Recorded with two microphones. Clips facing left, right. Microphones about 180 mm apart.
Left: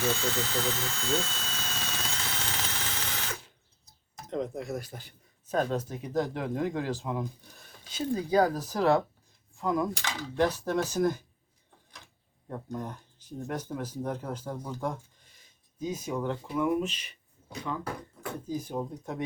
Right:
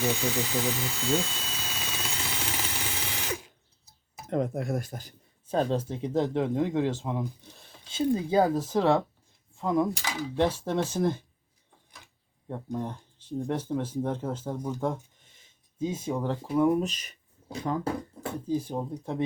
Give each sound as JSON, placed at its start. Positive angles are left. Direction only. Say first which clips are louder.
{"t": 0.0, "sound": "drill", "louder": "right 2 dB", "side_deg": -15}
{"t": 3.8, "sound": "tick-tock", "louder": "right 1 dB", "side_deg": -5}
{"t": 4.3, "sound": "speech", "louder": "right 4 dB", "side_deg": -55}
{"t": 5.5, "sound": "speech", "louder": "right 2 dB", "side_deg": -30}
{"t": 12.5, "sound": "speech", "louder": "right 3 dB", "side_deg": -25}